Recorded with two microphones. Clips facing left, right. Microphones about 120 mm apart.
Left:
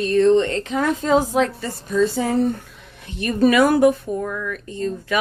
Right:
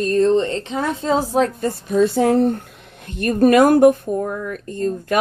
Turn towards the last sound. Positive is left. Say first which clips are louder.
# right 3 dB
turn(degrees=-55)  # may be behind; listen again after turning